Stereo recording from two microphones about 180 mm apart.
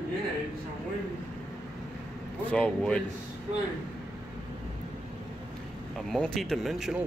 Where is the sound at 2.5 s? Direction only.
5° left (ahead or behind).